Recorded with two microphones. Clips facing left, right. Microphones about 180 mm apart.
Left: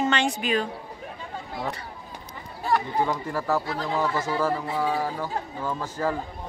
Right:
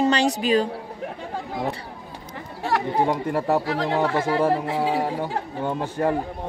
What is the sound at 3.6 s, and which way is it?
Speech, 85° right.